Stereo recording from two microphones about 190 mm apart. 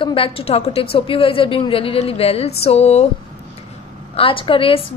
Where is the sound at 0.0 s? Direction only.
30° left (ahead or behind).